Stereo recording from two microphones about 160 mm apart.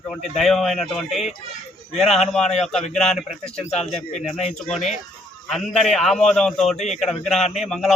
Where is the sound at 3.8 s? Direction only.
40° left (ahead or behind).